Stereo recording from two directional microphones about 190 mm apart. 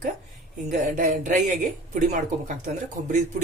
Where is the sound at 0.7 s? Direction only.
40° right (ahead or behind).